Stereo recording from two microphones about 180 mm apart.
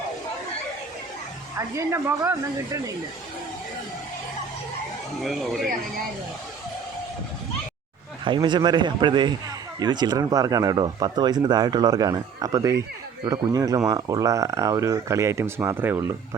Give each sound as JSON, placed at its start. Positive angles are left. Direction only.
{"t": 1.5, "sound": "speech", "side_deg": -15}
{"t": 5.2, "sound": "speech", "side_deg": 0}
{"t": 8.2, "sound": "speech", "side_deg": -25}